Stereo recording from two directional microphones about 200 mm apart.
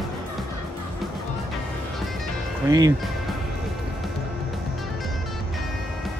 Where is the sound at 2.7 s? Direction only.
20° right (ahead or behind).